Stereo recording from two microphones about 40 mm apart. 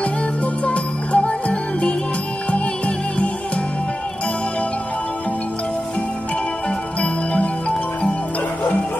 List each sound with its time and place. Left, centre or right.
0.7 s music: left